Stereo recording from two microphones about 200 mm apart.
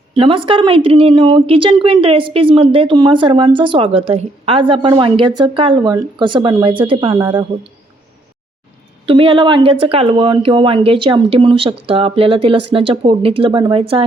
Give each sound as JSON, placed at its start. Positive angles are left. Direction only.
{"t": 0.1, "sound": "speech", "side_deg": -25}
{"t": 9.0, "sound": "speech", "side_deg": -25}